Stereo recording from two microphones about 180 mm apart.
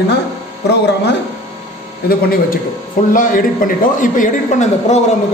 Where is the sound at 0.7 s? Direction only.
70° left (ahead or behind).